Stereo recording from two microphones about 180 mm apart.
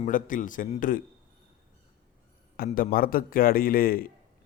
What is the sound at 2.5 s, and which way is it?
A man's voice, 55° left (ahead or behind).